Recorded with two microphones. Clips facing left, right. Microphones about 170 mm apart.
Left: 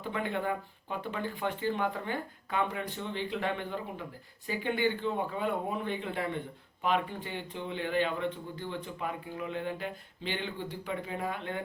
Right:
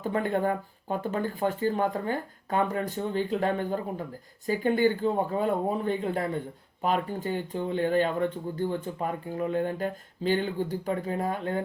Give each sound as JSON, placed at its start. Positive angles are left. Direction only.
{"t": 0.0, "sound": "speech", "side_deg": -45}